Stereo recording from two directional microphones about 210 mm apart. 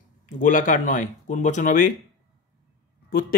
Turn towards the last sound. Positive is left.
turn(degrees=45)  # may be behind; listen again after turning